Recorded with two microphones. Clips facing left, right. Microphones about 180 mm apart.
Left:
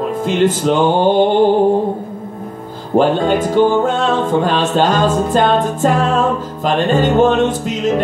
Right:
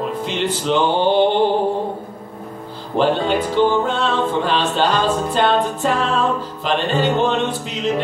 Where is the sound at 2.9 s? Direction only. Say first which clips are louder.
Left 4 dB; 45° left (ahead or behind).